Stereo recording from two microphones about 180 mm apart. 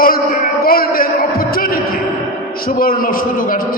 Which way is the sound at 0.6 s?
55° left (ahead or behind).